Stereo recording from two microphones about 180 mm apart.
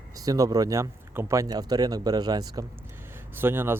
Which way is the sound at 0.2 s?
20° right (ahead or behind).